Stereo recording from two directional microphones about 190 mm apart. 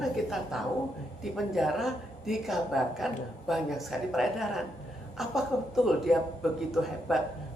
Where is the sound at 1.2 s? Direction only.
Centre (ahead or behind).